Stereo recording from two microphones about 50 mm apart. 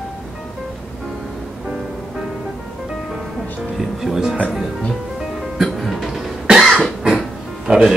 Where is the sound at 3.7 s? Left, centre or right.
Centre.